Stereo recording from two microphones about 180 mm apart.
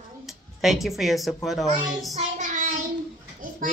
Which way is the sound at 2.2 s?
45° right (ahead or behind).